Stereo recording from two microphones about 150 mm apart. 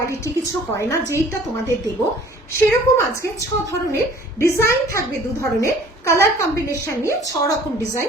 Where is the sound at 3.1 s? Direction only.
20° left (ahead or behind).